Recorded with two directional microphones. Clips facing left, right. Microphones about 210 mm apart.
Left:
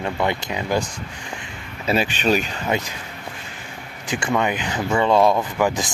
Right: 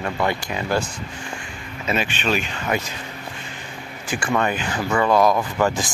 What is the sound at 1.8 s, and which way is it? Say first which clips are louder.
Speech: left 3 dB; 35° left (ahead or behind).